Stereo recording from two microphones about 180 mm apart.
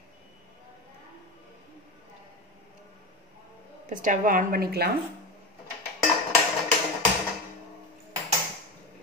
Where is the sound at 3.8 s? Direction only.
45° right (ahead or behind).